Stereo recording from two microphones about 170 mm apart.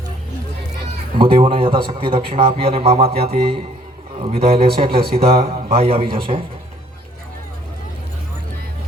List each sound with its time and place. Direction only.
1.2 s a man's voice: 30° right (ahead or behind)
4.9 s speech: 65° right (ahead or behind)
5.1 s a man's voice: 35° right (ahead or behind)